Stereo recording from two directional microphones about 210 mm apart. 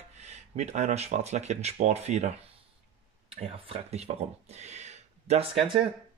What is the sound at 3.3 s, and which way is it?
Speech, 30° right (ahead or behind).